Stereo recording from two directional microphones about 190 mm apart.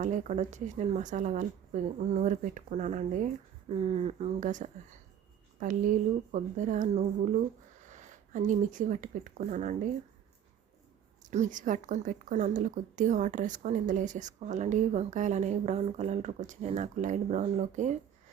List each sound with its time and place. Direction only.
0.0 s speech: 40° right (ahead or behind)
11.3 s speech: 40° right (ahead or behind)